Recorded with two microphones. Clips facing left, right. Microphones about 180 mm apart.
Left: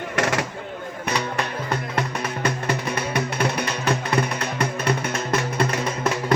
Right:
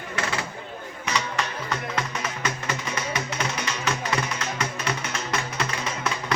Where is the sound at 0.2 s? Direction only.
80° left.